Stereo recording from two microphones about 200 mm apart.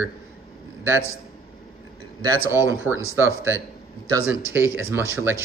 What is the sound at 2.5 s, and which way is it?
A man's voice, 10° right (ahead or behind).